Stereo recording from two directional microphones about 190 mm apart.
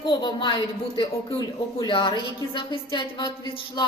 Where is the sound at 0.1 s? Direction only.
25° left (ahead or behind).